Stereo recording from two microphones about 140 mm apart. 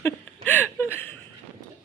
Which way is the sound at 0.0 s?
15° left (ahead or behind).